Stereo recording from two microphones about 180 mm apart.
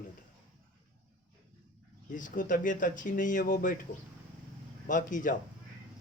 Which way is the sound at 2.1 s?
45° left (ahead or behind).